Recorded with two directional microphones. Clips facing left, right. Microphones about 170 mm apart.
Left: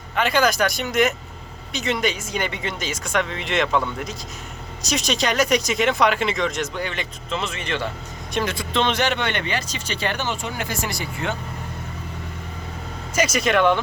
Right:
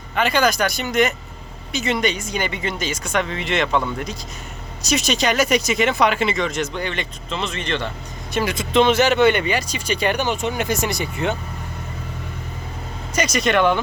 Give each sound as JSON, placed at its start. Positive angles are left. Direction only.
{"t": 0.2, "sound": "speech", "side_deg": 0}
{"t": 8.3, "sound": "speech", "side_deg": -5}
{"t": 8.5, "sound": "speech", "side_deg": -15}
{"t": 8.9, "sound": "speech", "side_deg": -5}
{"t": 13.1, "sound": "speech", "side_deg": 5}